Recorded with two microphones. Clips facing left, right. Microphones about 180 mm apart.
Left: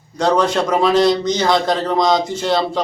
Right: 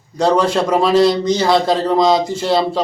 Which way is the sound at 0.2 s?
5° right (ahead or behind).